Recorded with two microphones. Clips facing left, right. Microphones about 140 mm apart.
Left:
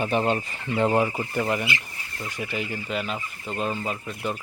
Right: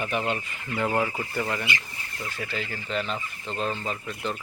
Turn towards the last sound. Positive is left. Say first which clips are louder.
# left 2 dB
turn(degrees=10)  # may be behind; listen again after turning